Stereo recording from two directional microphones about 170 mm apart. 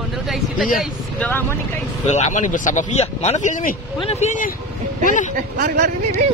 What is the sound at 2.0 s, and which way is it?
Speech, 45° left (ahead or behind).